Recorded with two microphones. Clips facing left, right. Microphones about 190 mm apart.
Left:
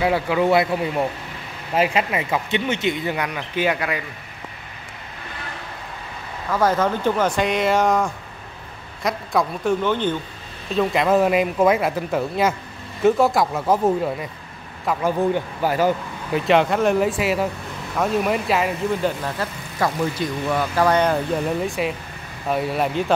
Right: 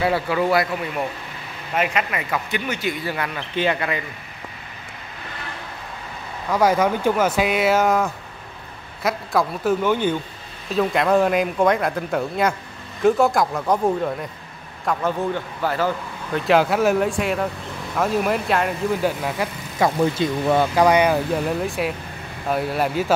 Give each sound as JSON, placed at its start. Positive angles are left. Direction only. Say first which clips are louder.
{"t": 0.0, "sound": "speech", "louder": "left 1 dB", "side_deg": 15}
{"t": 6.5, "sound": "a man's voice", "louder": "right 1 dB", "side_deg": -10}
{"t": 16.4, "sound": "speech", "louder": "even", "side_deg": 0}
{"t": 19.2, "sound": "speech", "louder": "right 2 dB", "side_deg": -15}
{"t": 20.2, "sound": "speech", "louder": "right 4 dB", "side_deg": -25}